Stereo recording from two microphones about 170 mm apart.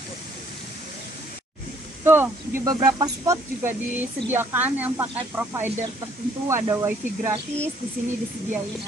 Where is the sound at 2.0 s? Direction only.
15° right (ahead or behind).